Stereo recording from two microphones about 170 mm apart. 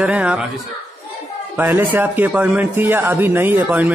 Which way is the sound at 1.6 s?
10° right (ahead or behind).